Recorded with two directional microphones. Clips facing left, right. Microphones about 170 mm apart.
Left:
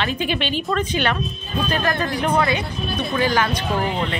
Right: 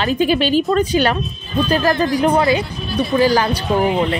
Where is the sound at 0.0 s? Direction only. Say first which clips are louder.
Right 7 dB; 40° right (ahead or behind).